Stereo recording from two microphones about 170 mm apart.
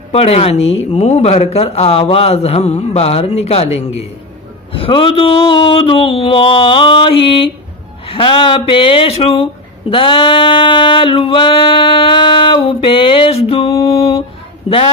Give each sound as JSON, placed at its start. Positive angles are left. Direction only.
{"t": 0.1, "sound": "male singing", "side_deg": 35}